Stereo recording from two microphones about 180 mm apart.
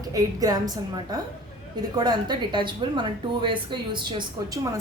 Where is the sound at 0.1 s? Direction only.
20° right (ahead or behind).